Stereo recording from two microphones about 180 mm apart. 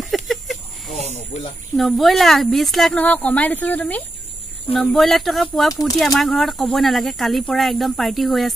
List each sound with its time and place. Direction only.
0.0 s a sound: centre (ahead or behind)
1.0 s speech: 35° left (ahead or behind)
1.8 s speech: centre (ahead or behind)